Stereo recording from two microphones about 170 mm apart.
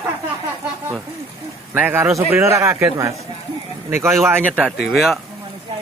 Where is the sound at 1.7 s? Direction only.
10° right (ahead or behind).